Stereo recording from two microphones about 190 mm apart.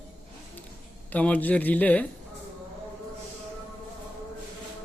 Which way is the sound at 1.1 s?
10° left (ahead or behind).